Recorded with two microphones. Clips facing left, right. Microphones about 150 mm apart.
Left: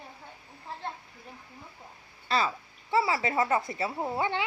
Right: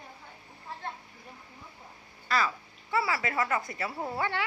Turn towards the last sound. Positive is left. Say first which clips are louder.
# left 2 dB
turn(degrees=20)  # may be behind; listen again after turning